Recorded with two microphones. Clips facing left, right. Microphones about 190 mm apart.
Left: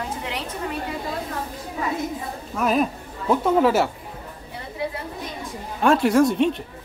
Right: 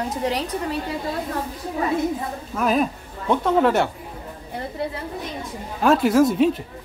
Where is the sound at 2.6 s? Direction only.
Centre (ahead or behind).